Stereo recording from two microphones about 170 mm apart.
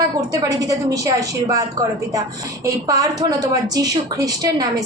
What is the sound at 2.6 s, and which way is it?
A woman's voice, 20° right (ahead or behind).